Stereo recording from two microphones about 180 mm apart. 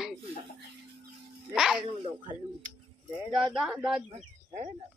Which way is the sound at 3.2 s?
5° right (ahead or behind).